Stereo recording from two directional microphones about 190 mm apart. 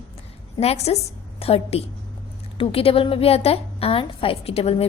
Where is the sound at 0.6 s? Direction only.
35° left (ahead or behind).